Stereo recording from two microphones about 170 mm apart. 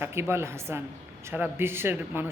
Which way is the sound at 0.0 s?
15° right (ahead or behind).